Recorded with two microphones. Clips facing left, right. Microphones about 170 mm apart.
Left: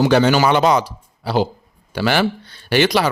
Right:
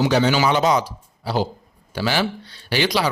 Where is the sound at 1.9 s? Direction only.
65° left (ahead or behind).